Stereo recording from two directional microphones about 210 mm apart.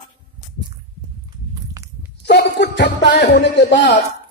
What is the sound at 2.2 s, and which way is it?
A man's voice, 55° left (ahead or behind).